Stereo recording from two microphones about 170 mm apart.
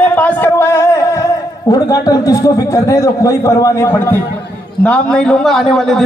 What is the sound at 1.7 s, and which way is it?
A man's voice, 20° left (ahead or behind).